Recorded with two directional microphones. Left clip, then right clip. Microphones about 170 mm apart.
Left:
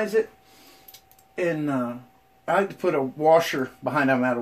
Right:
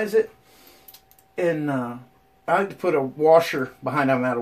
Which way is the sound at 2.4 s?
20° left (ahead or behind).